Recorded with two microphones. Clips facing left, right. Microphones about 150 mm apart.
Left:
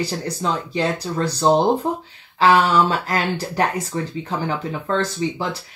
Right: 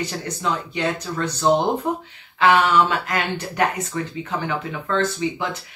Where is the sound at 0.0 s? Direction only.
35° left (ahead or behind).